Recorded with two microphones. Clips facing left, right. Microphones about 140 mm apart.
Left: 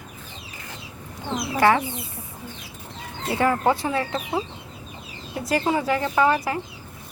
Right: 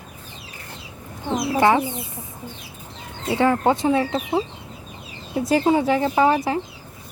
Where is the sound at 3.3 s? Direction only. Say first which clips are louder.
Right 2 dB; 20° right (ahead or behind).